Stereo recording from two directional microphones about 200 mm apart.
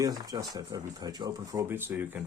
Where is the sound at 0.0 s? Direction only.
15° right (ahead or behind).